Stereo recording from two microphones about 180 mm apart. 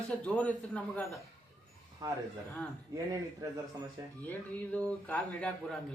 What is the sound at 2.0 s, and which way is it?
Speech, 20° right (ahead or behind).